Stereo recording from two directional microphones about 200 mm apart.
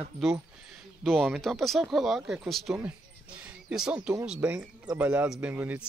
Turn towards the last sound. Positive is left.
turn(degrees=-10)  # may be behind; listen again after turning